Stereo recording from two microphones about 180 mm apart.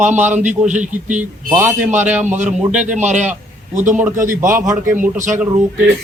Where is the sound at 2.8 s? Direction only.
40° right (ahead or behind).